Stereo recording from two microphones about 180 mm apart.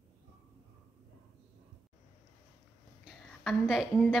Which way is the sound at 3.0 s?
Centre (ahead or behind).